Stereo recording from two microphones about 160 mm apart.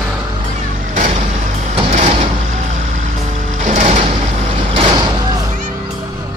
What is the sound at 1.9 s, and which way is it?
Sliding door, 50° right (ahead or behind).